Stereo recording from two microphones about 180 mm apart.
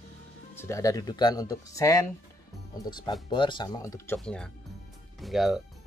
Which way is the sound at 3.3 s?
25° left (ahead or behind).